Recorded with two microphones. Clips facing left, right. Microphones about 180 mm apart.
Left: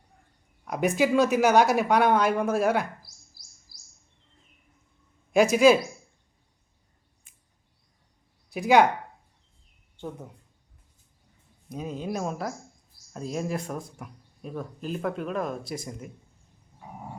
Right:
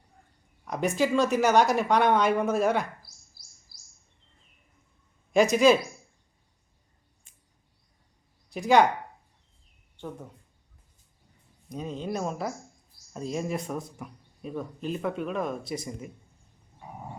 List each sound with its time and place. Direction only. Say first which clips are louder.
0.6 s speech: left 2 dB; 5° left (ahead or behind)
3.4 s bird: left 1 dB; 55° right (ahead or behind)
5.3 s speech: left 1 dB; 5° left (ahead or behind)
8.5 s speech: left 1 dB; 10° left (ahead or behind)
10.0 s speech: left 1 dB; 10° left (ahead or behind)
11.7 s speech: left 1 dB; 5° left (ahead or behind)